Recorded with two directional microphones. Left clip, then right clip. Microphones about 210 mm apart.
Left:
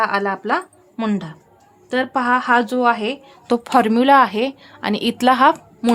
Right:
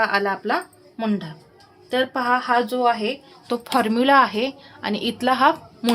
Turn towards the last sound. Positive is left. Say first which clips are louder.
# left 4 dB
turn(degrees=25)  # may be behind; listen again after turning